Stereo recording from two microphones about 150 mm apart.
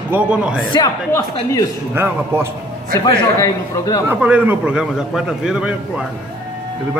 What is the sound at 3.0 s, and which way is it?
A man's voice, 25° left (ahead or behind).